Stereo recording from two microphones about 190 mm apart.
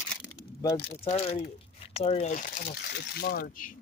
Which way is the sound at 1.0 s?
30° left (ahead or behind).